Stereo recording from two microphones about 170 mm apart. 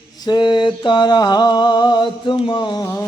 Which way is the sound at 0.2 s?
25° left (ahead or behind).